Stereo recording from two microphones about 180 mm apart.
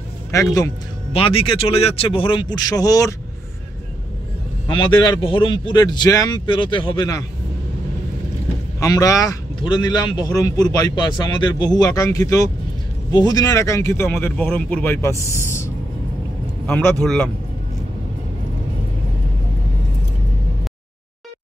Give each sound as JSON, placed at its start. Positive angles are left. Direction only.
{"t": 1.1, "sound": "speech", "side_deg": 30}
{"t": 4.6, "sound": "speech", "side_deg": 25}
{"t": 8.7, "sound": "speech", "side_deg": 20}
{"t": 16.6, "sound": "speech", "side_deg": 5}